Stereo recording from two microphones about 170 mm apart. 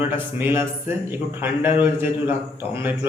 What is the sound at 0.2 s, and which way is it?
A man's voice, 10° right (ahead or behind).